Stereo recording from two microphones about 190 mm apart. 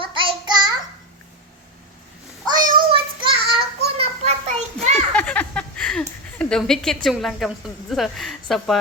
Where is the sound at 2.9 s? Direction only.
25° right (ahead or behind).